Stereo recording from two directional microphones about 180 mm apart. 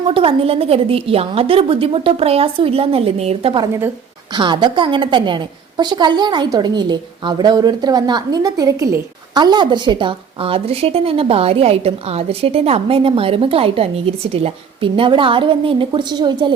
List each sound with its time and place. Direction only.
0.1 s a woman's voice: 30° right (ahead or behind)